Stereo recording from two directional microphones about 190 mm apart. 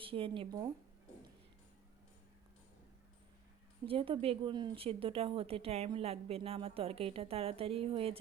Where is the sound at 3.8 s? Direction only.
30° right (ahead or behind).